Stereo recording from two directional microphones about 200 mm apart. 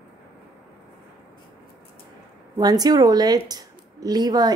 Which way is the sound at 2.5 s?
20° right (ahead or behind).